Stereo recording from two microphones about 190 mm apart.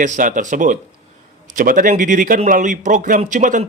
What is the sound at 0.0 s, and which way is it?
Speech, 40° right (ahead or behind).